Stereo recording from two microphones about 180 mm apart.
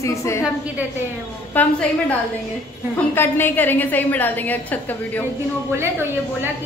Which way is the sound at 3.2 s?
10° left (ahead or behind).